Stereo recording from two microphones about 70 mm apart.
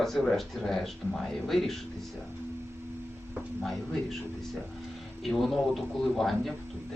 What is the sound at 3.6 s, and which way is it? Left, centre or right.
Speech, centre.